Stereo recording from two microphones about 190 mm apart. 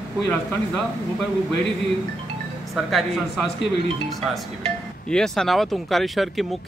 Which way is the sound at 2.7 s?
Centre (ahead or behind).